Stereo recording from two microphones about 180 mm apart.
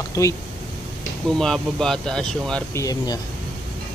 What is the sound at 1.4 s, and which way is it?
Speech, 5° left (ahead or behind).